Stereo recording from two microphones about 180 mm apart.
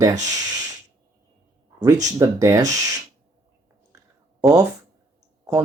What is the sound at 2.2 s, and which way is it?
Speech, 15° right (ahead or behind).